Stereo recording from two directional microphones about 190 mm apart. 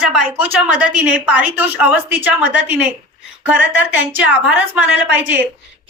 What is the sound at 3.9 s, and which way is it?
A woman's voice, 10° right (ahead or behind).